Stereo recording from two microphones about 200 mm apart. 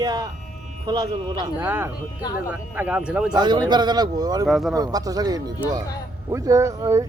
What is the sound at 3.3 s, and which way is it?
Speech, 20° right (ahead or behind).